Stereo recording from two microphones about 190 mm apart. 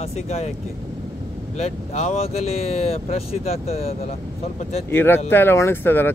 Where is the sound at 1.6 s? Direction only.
35° left (ahead or behind).